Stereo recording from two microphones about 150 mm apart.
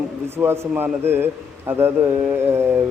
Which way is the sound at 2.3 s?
15° right (ahead or behind).